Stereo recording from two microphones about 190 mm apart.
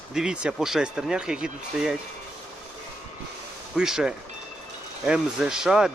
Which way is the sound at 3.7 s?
5° right (ahead or behind).